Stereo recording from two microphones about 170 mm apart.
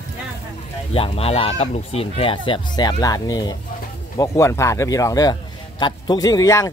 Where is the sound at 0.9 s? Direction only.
35° left (ahead or behind).